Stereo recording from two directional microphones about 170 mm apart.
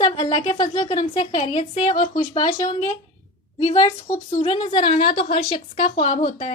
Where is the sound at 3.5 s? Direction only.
40° left (ahead or behind).